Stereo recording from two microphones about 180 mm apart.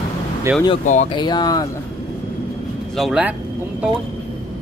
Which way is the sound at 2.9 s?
Centre (ahead or behind).